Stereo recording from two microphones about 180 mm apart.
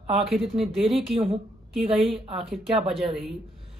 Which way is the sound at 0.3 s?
Centre (ahead or behind).